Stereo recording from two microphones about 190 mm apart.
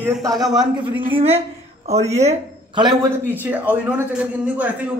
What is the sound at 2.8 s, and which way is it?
A woman's voice, 20° right (ahead or behind).